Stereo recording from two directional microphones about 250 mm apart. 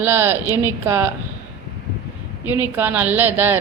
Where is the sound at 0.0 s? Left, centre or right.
Centre.